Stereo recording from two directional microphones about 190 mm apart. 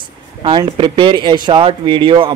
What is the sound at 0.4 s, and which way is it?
A man's voice, 25° right (ahead or behind).